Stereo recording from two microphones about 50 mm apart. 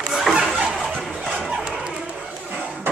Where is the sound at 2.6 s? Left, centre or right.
Right.